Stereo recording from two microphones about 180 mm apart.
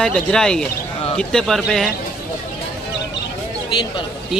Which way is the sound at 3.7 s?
25° left (ahead or behind).